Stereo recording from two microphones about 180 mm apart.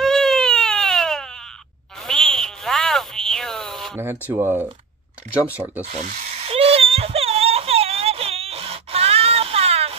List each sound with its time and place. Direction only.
0.0 s baby cry: centre (ahead or behind)
2.0 s frog: centre (ahead or behind)
3.9 s speech: 15° right (ahead or behind)
5.9 s crying: 45° right (ahead or behind)